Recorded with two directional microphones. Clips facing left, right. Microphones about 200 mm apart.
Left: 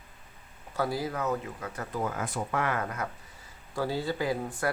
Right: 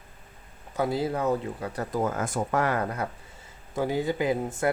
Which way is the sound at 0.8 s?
25° right (ahead or behind).